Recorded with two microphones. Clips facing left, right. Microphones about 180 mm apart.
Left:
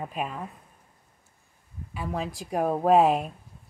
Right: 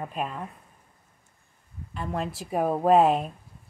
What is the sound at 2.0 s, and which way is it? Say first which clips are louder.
Speech: right 1 dB; centre (ahead or behind).